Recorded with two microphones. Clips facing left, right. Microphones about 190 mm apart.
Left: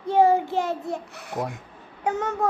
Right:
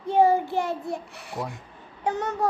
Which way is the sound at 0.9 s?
20° left (ahead or behind).